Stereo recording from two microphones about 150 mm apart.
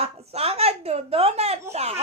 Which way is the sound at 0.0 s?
45° right (ahead or behind).